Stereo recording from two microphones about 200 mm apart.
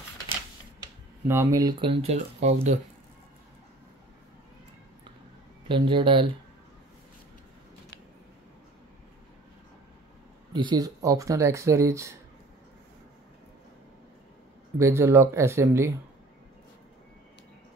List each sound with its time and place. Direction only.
1.2 s speech: 10° right (ahead or behind); by 2.8 s 35° right (ahead or behind)
5.7 s speech: 25° right (ahead or behind)
10.5 s speech: 20° right (ahead or behind)
14.8 s speech: 15° right (ahead or behind)